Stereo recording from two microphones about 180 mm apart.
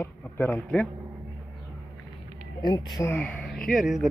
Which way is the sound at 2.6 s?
25° left (ahead or behind).